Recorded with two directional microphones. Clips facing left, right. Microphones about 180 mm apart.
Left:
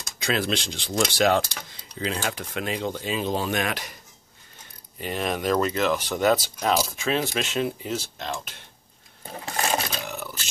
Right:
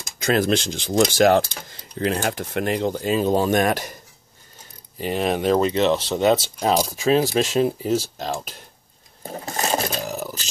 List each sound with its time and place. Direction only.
0.2 s speech: 45° right (ahead or behind)
4.9 s speech: 30° right (ahead or behind)
9.2 s a sound: 35° right (ahead or behind)